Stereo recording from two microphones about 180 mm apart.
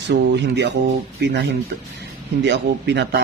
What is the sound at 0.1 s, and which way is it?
Speech, 70° right (ahead or behind).